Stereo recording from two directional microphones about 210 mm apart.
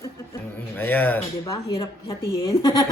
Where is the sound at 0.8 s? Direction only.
10° left (ahead or behind).